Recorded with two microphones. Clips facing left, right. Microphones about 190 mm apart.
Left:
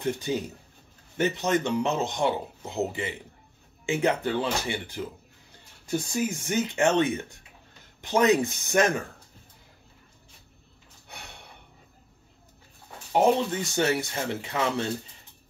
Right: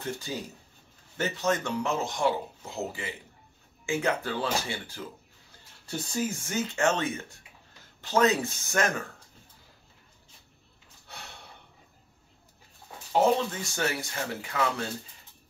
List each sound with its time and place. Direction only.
0.0 s a man's voice: 20° left (ahead or behind)
13.1 s a man's voice: 20° left (ahead or behind)